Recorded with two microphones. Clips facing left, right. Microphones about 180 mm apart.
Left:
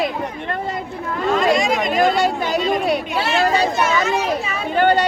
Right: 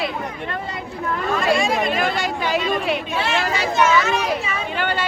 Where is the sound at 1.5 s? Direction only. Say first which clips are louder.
Left 1 dB; 15° left (ahead or behind).